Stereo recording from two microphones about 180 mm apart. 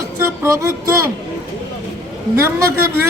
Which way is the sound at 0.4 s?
15° right (ahead or behind).